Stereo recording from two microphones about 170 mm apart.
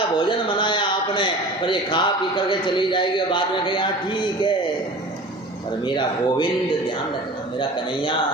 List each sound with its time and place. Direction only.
0.2 s a man's voice: 25° left (ahead or behind)
5.8 s speech: 25° left (ahead or behind)